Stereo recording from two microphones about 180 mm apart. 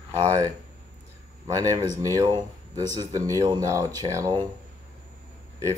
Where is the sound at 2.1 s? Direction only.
20° right (ahead or behind).